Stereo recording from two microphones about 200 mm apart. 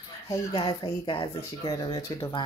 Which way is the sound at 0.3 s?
20° left (ahead or behind).